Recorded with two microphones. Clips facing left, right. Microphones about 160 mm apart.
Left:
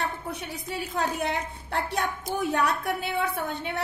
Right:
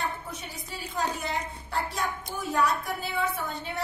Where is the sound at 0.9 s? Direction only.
65° left (ahead or behind).